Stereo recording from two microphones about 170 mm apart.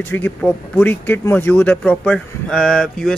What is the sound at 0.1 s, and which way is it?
Speech, 10° left (ahead or behind).